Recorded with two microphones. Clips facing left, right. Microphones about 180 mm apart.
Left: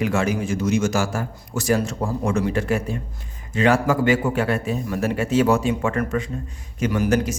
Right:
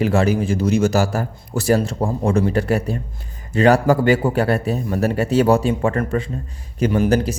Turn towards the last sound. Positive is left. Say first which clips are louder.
# right 3 dB
turn(degrees=-30)  # may be behind; listen again after turning